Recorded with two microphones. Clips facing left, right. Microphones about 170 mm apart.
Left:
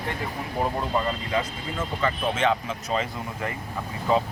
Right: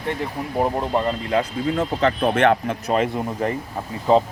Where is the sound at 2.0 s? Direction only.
65° right (ahead or behind).